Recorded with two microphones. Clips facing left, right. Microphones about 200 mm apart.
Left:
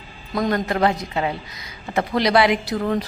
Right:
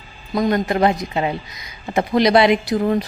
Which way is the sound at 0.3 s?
20° right (ahead or behind).